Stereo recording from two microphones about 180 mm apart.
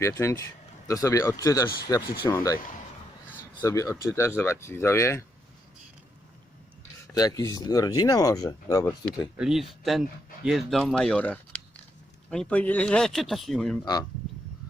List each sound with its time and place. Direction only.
0.0 s speech: 15° left (ahead or behind)
3.6 s speech: 15° left (ahead or behind)
7.1 s speech: 20° left (ahead or behind)
9.4 s speech: centre (ahead or behind)
13.8 s speech: 20° left (ahead or behind)